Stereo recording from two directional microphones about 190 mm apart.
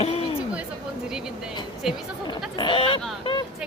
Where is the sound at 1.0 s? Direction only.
5° right (ahead or behind).